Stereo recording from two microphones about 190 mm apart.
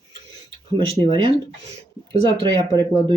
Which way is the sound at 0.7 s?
25° right (ahead or behind).